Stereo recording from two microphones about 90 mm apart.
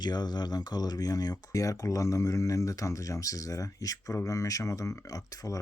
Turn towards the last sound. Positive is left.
turn(degrees=40)  # may be behind; listen again after turning